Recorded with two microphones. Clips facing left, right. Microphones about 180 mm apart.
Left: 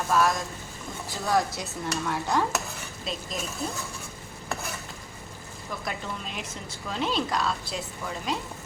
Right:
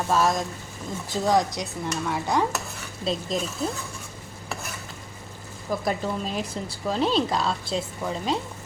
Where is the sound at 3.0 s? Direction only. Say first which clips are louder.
Right 8 dB; 35° right (ahead or behind).